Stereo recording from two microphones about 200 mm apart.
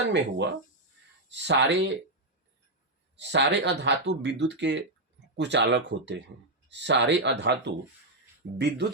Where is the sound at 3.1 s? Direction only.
60° right (ahead or behind).